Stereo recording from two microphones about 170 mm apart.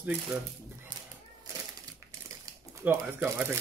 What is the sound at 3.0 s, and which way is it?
Speech, 10° right (ahead or behind).